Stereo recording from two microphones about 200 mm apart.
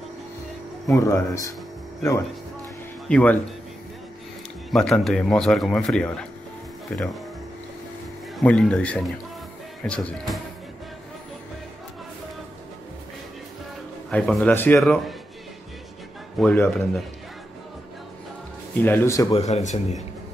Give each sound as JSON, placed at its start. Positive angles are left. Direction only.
{"t": 0.9, "sound": "a man's voice", "side_deg": 15}
{"t": 3.1, "sound": "speech", "side_deg": 5}
{"t": 4.6, "sound": "speech", "side_deg": 5}
{"t": 8.4, "sound": "speech", "side_deg": 5}
{"t": 14.1, "sound": "a man's voice", "side_deg": 5}
{"t": 14.8, "sound": "speech", "side_deg": 0}
{"t": 16.3, "sound": "a man's voice", "side_deg": 10}
{"t": 18.8, "sound": "a man's voice", "side_deg": 10}
{"t": 19.3, "sound": "speech", "side_deg": 35}